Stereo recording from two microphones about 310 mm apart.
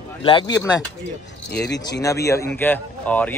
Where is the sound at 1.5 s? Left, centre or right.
Left.